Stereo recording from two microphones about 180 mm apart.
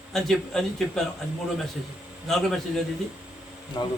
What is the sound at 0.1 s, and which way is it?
Speech, centre (ahead or behind).